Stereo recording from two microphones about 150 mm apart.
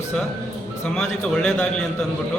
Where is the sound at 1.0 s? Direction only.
5° left (ahead or behind).